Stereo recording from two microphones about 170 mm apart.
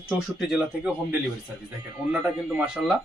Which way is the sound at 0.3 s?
5° right (ahead or behind).